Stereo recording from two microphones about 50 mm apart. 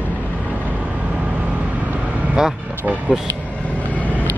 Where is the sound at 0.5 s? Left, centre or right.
Right.